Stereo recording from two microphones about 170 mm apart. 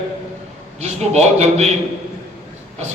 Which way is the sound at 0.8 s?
40° right (ahead or behind).